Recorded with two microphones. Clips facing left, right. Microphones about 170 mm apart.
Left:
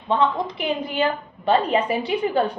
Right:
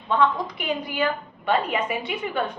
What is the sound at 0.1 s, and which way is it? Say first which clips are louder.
A woman's voice: left 1 dB; 25° left (ahead or behind).